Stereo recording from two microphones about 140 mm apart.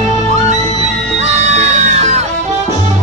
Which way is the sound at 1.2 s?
50° right (ahead or behind).